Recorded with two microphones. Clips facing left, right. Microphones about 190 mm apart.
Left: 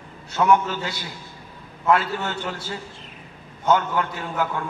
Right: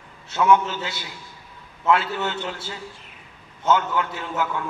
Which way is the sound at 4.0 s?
45° left (ahead or behind).